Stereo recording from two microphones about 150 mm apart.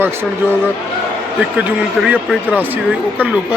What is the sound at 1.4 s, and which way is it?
A man's voice, 5° right (ahead or behind).